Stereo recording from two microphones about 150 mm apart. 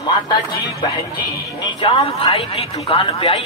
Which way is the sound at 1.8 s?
40° left (ahead or behind).